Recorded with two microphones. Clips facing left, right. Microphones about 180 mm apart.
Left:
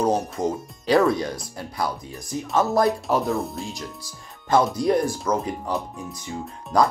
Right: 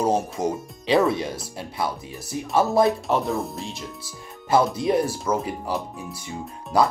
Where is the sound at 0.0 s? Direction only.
5° right (ahead or behind).